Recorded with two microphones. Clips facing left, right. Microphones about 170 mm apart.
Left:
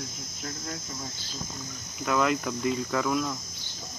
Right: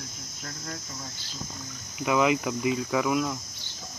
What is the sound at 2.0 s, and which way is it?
Speech, 10° right (ahead or behind).